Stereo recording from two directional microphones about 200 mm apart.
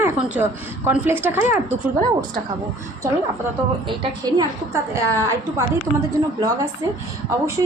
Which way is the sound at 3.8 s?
20° right (ahead or behind).